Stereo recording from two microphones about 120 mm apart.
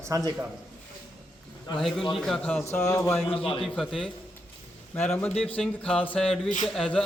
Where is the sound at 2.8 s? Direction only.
25° left (ahead or behind).